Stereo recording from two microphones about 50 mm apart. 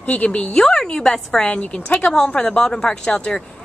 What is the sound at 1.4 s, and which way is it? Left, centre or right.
A woman's voice, left.